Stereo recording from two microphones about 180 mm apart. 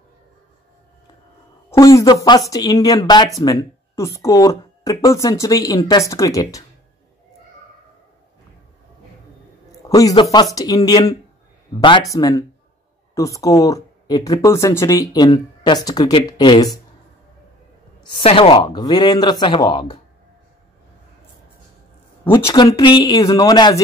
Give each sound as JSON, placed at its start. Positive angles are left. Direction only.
{"t": 1.7, "sound": "a woman's voice", "side_deg": 15}
{"t": 9.8, "sound": "a woman's voice", "side_deg": 20}
{"t": 18.2, "sound": "a woman's voice", "side_deg": 30}
{"t": 22.4, "sound": "a woman's voice", "side_deg": 20}